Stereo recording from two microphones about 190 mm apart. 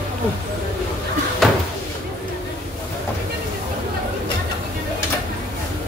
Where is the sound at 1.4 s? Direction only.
Centre (ahead or behind).